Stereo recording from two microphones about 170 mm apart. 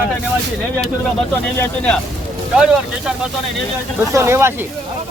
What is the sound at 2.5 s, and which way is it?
Speech, 5° right (ahead or behind).